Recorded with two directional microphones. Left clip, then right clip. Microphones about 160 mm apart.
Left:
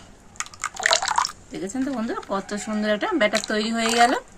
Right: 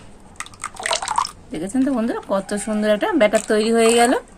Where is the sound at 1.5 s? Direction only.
30° right (ahead or behind).